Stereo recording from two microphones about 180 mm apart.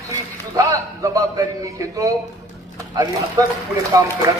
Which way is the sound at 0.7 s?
20° right (ahead or behind).